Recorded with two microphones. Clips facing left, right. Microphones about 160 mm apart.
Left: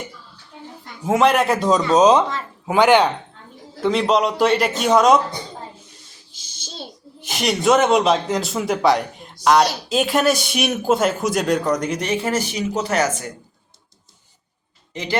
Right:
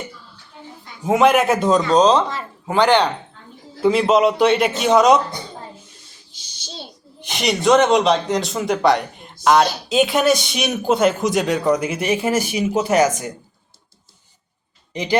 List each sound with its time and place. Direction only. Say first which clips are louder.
1.0 s speech: right 2 dB; centre (ahead or behind)
3.8 s speech: right 3 dB; 5° right (ahead or behind)
7.2 s speech: even; centre (ahead or behind); by 13.3 s 15° right (ahead or behind)
14.9 s speech: right 4 dB; 15° right (ahead or behind)